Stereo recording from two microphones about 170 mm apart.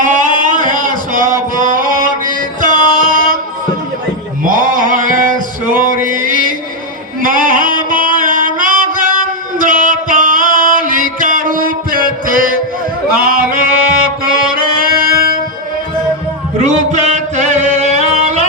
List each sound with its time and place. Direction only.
0.0 s a sound: 50° right (ahead or behind)
4.4 s male singing: 55° right (ahead or behind)
7.2 s mantra: 55° right (ahead or behind)
9.6 s music: 50° right (ahead or behind)
16.6 s music: 45° right (ahead or behind)